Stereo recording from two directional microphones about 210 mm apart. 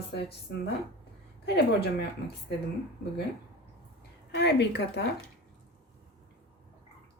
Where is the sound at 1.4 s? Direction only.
50° left (ahead or behind).